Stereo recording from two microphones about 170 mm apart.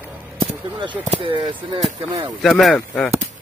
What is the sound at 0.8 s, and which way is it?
Speech, 30° right (ahead or behind).